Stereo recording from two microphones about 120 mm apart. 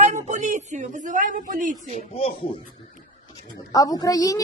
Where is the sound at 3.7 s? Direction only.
30° left (ahead or behind).